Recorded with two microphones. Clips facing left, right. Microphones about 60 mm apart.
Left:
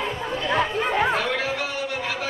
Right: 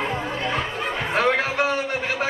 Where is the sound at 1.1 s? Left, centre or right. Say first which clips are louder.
Right 4 dB; right.